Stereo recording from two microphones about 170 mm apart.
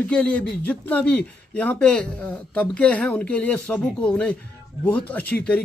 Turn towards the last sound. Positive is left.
turn(degrees=5)  # may be behind; listen again after turning